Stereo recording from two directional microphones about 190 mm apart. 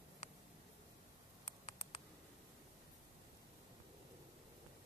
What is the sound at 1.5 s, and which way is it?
Mouse, 35° left (ahead or behind).